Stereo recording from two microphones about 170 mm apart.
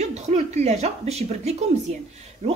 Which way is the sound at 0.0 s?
40° right (ahead or behind).